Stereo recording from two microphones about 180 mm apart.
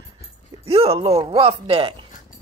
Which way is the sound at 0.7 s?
35° right (ahead or behind).